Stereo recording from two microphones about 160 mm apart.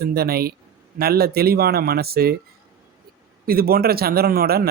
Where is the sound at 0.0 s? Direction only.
70° right (ahead or behind).